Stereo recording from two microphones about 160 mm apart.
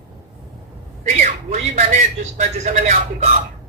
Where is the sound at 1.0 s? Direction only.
45° right (ahead or behind).